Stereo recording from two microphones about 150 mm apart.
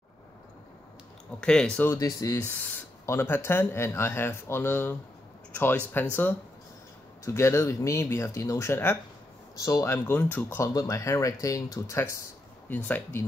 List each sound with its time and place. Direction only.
1.4 s speech: 5° left (ahead or behind)
1.9 s speech: 25° left (ahead or behind)
7.2 s speech: 20° left (ahead or behind)